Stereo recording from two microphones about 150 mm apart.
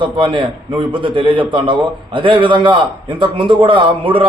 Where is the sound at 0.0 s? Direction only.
35° right (ahead or behind).